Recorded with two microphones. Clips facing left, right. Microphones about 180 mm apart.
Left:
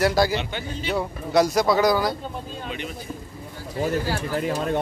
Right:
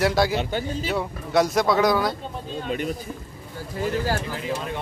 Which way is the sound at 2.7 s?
45° right (ahead or behind).